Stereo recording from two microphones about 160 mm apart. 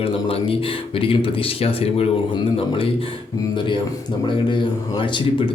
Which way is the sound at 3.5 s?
30° left (ahead or behind).